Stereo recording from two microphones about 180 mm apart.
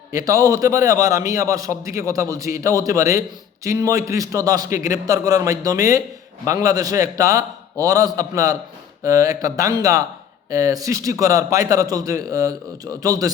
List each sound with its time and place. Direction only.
0.1 s a man's voice: 20° right (ahead or behind)